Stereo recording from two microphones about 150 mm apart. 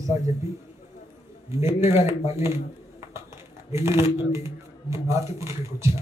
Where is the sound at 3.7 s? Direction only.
20° right (ahead or behind).